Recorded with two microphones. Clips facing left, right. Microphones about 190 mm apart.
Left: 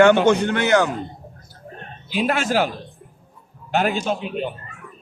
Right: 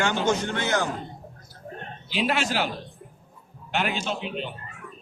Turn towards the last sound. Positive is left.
turn(degrees=50)  # may be behind; listen again after turning